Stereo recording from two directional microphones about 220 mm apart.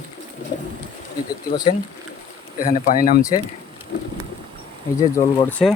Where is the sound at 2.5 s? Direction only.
40° left (ahead or behind).